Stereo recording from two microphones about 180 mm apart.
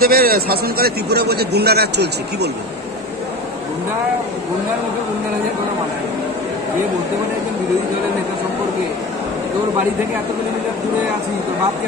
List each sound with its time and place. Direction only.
0.0 s a man's voice: 55° right (ahead or behind)